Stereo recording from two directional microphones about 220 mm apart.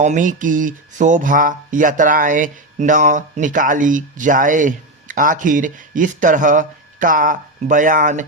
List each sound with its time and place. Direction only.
0.0 s speech: 35° right (ahead or behind)